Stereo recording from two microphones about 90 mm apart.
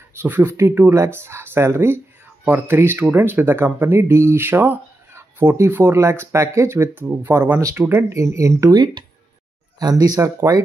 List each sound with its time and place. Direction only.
0.1 s speech: 25° right (ahead or behind)
8.1 s speech: 35° right (ahead or behind)
8.7 s speech: 55° right (ahead or behind); by 10.6 s 40° right (ahead or behind)